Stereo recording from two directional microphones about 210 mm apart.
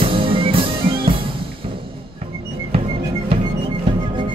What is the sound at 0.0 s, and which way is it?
Music, 25° right (ahead or behind).